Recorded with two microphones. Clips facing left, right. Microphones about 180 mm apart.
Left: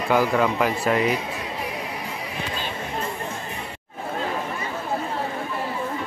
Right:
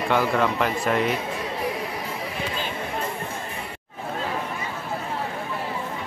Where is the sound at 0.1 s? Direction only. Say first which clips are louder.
Left 2 dB; 5° left (ahead or behind).